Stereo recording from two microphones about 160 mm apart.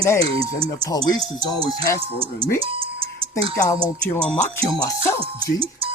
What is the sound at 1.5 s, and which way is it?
Speech, 35° right (ahead or behind).